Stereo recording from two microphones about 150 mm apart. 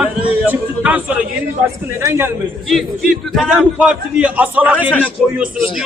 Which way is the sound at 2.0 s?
20° right (ahead or behind).